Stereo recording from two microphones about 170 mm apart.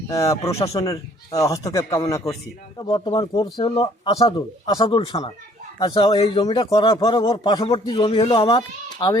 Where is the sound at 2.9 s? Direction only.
30° left (ahead or behind).